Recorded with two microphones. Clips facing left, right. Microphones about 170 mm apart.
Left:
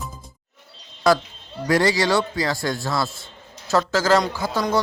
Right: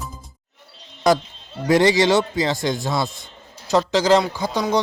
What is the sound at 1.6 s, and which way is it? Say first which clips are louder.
Speech: right 4 dB; 20° right (ahead or behind).